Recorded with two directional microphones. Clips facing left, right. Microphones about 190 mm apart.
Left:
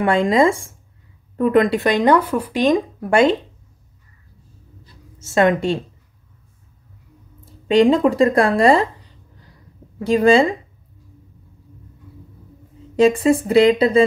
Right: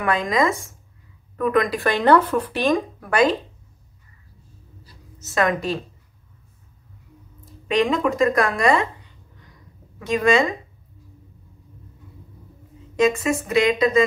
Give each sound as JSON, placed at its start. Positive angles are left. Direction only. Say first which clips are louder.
{"t": 0.0, "sound": "speech", "louder": "left 6 dB", "side_deg": 30}
{"t": 5.2, "sound": "speech", "louder": "left 6 dB", "side_deg": 25}
{"t": 7.4, "sound": "speech", "louder": "left 7 dB", "side_deg": 30}
{"t": 9.4, "sound": "a sound", "louder": "left 4 dB", "side_deg": 35}
{"t": 12.9, "sound": "speech", "louder": "left 5 dB", "side_deg": 30}